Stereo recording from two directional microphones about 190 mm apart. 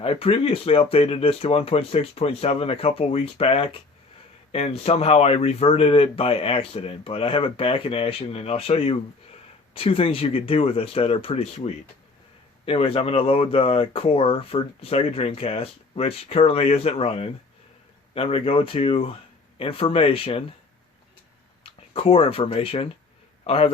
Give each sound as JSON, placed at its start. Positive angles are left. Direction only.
{"t": 0.0, "sound": "speech", "side_deg": 30}
{"t": 21.6, "sound": "a man's voice", "side_deg": 30}